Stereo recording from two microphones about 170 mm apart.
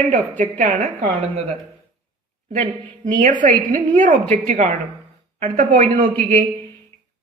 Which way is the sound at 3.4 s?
55° right (ahead or behind).